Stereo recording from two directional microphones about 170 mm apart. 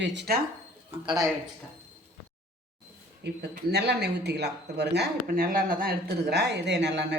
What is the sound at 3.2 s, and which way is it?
Speech, 75° right (ahead or behind).